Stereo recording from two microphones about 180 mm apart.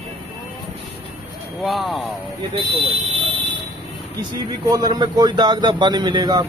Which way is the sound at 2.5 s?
35° right (ahead or behind).